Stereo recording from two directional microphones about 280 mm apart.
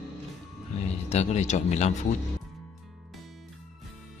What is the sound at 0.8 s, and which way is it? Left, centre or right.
Speech, left.